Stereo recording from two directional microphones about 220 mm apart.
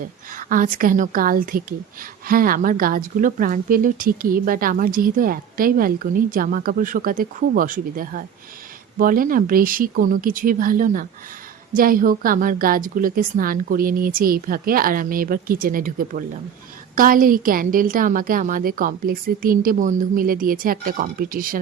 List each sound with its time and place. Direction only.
0.3 s speech: 40° right (ahead or behind)